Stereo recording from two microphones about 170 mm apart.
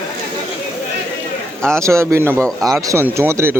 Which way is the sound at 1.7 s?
15° right (ahead or behind).